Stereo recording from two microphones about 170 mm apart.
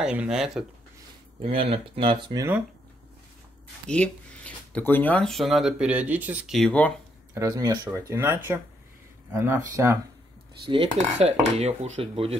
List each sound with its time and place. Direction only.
0.0 s speech: 5° right (ahead or behind)
1.4 s dishes: 35° right (ahead or behind)
3.8 s speech: 5° left (ahead or behind)
7.3 s speech: 20° right (ahead or behind)
11.0 s dishes: 40° right (ahead or behind)